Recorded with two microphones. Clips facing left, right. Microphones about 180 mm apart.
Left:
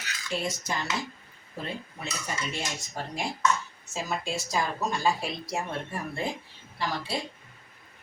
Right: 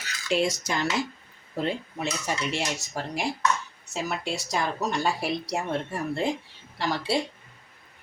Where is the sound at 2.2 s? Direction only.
85° right.